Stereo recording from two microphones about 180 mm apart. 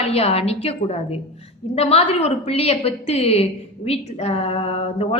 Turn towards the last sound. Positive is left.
turn(degrees=35)  # may be behind; listen again after turning